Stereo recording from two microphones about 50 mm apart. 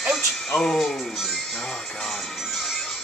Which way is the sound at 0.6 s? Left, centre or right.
Centre.